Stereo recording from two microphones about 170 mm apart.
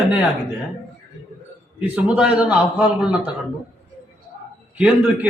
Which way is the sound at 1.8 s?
10° right (ahead or behind).